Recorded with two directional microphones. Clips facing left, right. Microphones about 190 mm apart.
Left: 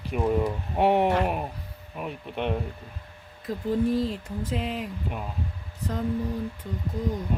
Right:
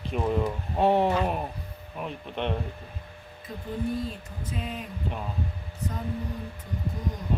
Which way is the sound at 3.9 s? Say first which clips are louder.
Left 5 dB; 90° left.